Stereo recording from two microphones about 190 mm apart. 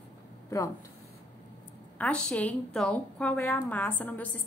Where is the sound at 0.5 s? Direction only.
15° left (ahead or behind).